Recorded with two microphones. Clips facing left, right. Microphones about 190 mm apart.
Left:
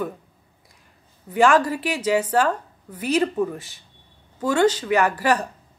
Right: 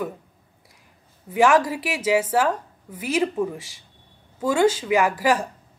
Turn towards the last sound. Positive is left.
turn(degrees=-10)  # may be behind; listen again after turning